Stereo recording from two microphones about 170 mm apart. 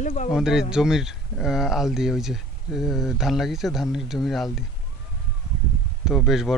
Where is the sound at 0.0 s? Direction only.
45° left (ahead or behind).